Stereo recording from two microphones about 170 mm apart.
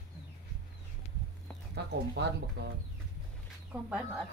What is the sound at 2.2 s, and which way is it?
Speech, 90° right.